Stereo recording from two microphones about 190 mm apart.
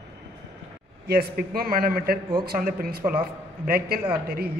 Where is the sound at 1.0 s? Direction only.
55° right (ahead or behind).